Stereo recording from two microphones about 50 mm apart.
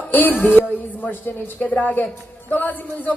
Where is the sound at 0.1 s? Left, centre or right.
Left.